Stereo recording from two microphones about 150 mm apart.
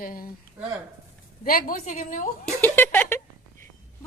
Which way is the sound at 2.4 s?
10° left (ahead or behind).